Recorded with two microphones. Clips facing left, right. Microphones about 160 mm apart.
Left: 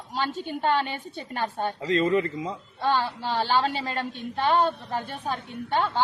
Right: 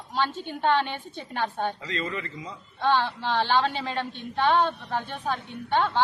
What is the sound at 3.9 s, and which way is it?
A woman's voice, 45° left (ahead or behind).